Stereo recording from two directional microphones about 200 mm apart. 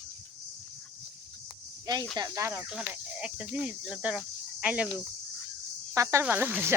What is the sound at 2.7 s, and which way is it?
Speech, 5° right (ahead or behind).